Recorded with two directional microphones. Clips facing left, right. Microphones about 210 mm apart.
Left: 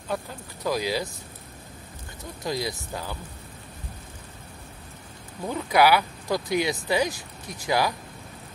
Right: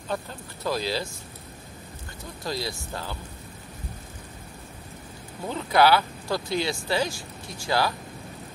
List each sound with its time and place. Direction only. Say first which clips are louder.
0.7 s speech: left 1 dB; 15° left (ahead or behind)
2.4 s speech: left 2 dB; 20° left (ahead or behind)
5.5 s speech: even; 15° left (ahead or behind)